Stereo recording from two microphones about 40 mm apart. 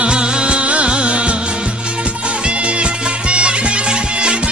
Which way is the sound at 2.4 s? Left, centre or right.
Right.